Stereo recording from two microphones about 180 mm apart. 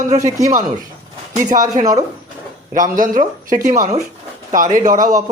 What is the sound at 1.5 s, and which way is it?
Speech, 50° right (ahead or behind).